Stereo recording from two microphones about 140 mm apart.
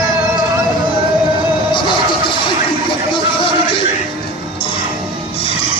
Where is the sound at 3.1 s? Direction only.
40° left (ahead or behind).